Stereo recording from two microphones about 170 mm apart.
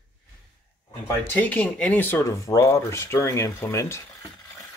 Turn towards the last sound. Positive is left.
turn(degrees=15)  # may be behind; listen again after turning